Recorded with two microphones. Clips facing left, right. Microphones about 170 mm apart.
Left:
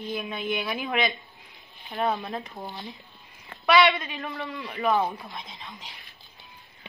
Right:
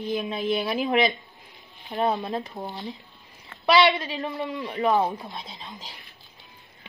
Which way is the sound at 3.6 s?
30° right (ahead or behind).